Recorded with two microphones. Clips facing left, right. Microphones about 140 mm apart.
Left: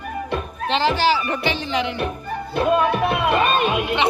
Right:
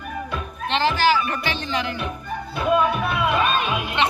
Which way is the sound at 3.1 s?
55° left (ahead or behind).